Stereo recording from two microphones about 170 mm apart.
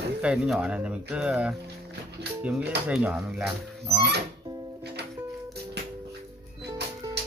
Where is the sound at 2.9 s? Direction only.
5° right (ahead or behind).